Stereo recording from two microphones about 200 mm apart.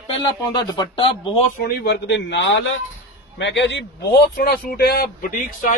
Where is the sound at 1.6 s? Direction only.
60° left (ahead or behind).